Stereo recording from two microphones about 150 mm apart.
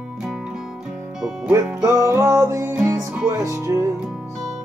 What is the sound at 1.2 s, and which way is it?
Music, 10° right (ahead or behind).